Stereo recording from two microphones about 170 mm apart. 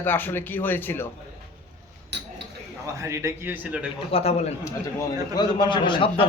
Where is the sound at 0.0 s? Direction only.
10° left (ahead or behind).